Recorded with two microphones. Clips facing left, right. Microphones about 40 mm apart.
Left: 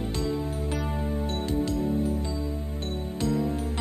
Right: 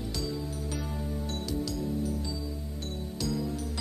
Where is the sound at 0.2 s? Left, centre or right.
Left.